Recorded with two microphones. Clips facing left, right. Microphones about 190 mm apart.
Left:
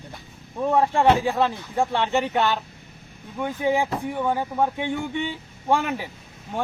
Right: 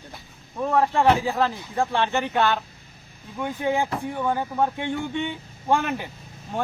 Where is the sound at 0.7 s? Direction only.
15° left (ahead or behind).